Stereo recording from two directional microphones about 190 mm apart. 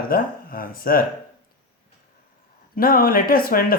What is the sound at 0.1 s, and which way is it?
Speech, 50° left (ahead or behind).